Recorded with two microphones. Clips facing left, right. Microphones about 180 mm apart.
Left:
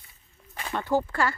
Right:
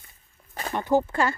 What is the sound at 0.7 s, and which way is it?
Speech, 15° right (ahead or behind).